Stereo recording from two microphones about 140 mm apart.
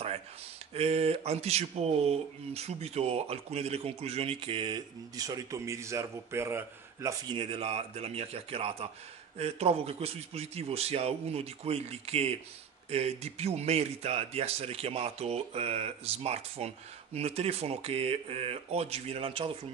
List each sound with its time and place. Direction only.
0.7 s speech: 45° right (ahead or behind); by 7.3 s 20° right (ahead or behind)
7.3 s speech: 40° right (ahead or behind)